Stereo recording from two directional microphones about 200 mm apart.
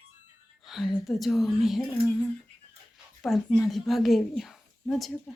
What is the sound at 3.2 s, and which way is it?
A woman's voice, centre (ahead or behind).